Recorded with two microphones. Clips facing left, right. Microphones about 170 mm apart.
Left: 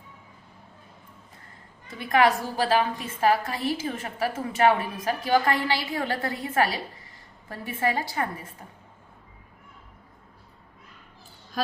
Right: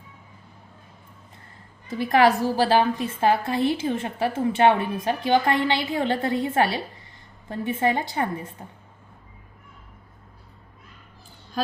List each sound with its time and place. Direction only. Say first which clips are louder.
2.0 s a woman's voice: right 3 dB; 30° right (ahead or behind)